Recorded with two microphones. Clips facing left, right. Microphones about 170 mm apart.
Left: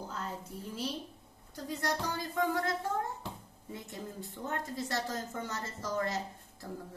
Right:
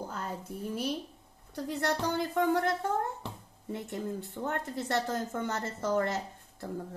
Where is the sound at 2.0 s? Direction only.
60° right (ahead or behind).